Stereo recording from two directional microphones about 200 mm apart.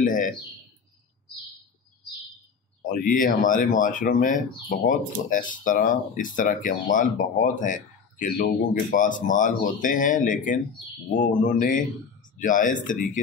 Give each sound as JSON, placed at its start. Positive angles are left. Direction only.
{"t": 0.0, "sound": "bird", "side_deg": 40}
{"t": 2.9, "sound": "speech", "side_deg": 40}